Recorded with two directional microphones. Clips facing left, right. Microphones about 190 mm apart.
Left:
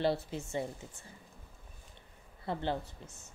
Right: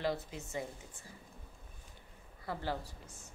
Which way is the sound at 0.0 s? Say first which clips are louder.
Left 5 dB; 30° left (ahead or behind).